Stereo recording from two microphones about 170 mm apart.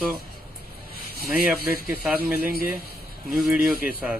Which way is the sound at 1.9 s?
10° right (ahead or behind).